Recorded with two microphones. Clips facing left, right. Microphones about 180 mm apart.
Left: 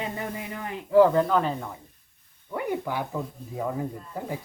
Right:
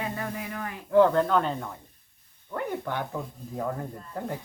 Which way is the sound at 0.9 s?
5° left (ahead or behind).